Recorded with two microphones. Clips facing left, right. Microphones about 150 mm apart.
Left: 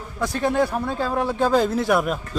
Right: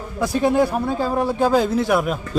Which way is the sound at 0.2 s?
10° right (ahead or behind).